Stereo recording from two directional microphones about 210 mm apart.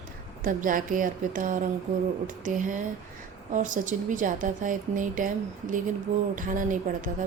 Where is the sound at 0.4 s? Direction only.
40° right (ahead or behind).